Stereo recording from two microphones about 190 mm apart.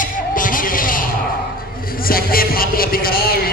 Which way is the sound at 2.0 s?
50° left (ahead or behind).